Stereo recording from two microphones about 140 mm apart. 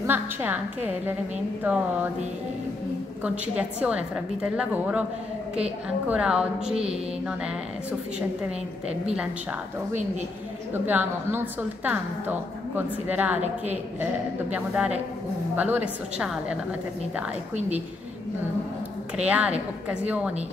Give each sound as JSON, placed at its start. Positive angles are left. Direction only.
{"t": 0.0, "sound": "a woman's voice", "side_deg": -15}
{"t": 3.3, "sound": "a woman's voice", "side_deg": -10}
{"t": 6.7, "sound": "mantra", "side_deg": -45}
{"t": 9.1, "sound": "a woman's voice", "side_deg": -5}
{"t": 10.7, "sound": "a woman's voice", "side_deg": -15}
{"t": 14.5, "sound": "a woman's voice", "side_deg": -10}
{"t": 19.1, "sound": "a woman's voice", "side_deg": -10}